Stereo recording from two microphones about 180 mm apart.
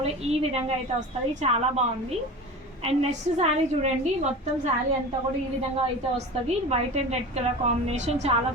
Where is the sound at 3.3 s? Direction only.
40° right (ahead or behind).